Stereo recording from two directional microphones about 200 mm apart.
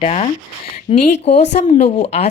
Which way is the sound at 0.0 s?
30° left (ahead or behind).